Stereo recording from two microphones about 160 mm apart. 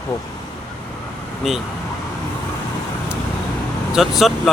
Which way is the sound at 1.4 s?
Centre (ahead or behind).